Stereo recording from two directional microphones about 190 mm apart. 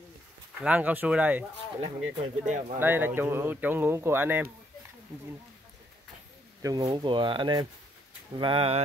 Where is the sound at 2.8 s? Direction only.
10° right (ahead or behind).